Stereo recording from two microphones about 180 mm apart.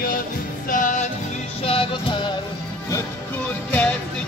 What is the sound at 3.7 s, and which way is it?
Music, 5° left (ahead or behind).